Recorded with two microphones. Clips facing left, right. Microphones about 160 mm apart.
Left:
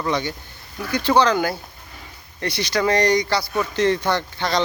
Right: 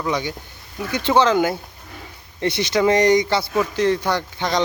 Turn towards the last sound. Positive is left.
turn(degrees=-15)  # may be behind; listen again after turning